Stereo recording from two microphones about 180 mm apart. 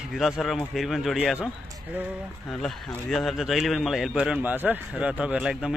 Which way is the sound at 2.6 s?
Centre (ahead or behind).